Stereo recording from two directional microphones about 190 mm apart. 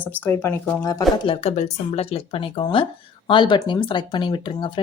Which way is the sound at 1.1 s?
25° left (ahead or behind).